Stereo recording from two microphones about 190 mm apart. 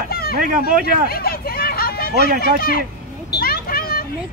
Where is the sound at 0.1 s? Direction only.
55° left (ahead or behind).